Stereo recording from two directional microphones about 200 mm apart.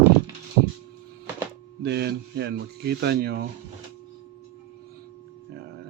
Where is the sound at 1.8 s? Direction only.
55° right (ahead or behind).